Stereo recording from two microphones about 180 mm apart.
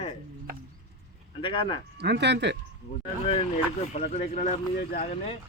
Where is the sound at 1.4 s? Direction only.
30° left (ahead or behind).